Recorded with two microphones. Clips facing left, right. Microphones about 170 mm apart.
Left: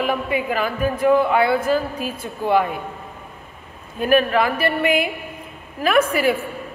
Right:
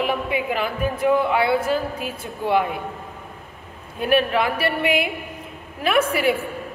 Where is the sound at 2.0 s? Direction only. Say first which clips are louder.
Left 2 dB; 10° right (ahead or behind).